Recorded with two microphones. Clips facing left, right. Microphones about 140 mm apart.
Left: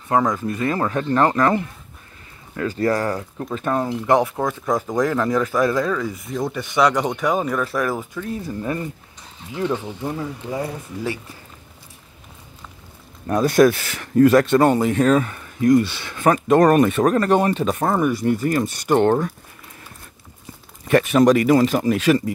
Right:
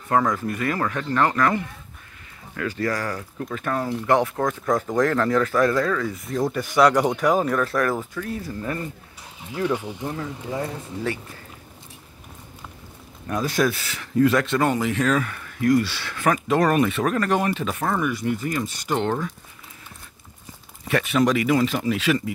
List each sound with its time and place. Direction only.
0.1 s speech: 20° left (ahead or behind)
6.2 s speech: centre (ahead or behind)
13.5 s speech: 55° left (ahead or behind); by 16.3 s 20° left (ahead or behind)
16.4 s speech: 45° left (ahead or behind)
20.9 s speech: 45° left (ahead or behind)